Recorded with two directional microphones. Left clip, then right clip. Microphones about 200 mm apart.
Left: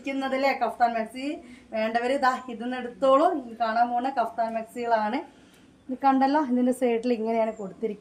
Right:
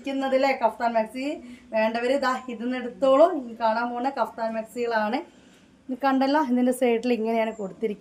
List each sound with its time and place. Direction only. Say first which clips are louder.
0.0 s speech: right 3 dB; 15° right (ahead or behind)
6.0 s a woman's voice: even; 35° right (ahead or behind)